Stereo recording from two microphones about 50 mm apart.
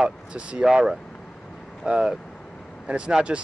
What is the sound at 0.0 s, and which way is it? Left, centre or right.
Speech, right.